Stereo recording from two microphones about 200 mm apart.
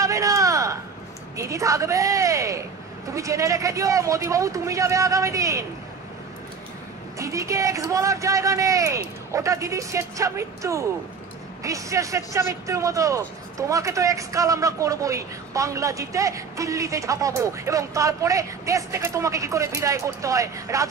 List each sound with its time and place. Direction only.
0.0 s a sound: 15° right (ahead or behind)
1.3 s speech: 15° right (ahead or behind)
7.2 s speech: 15° right (ahead or behind)